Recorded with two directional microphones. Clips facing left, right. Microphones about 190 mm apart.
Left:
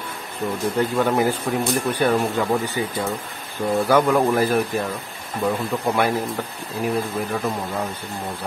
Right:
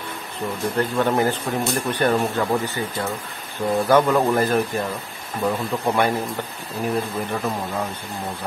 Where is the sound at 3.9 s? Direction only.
5° left (ahead or behind).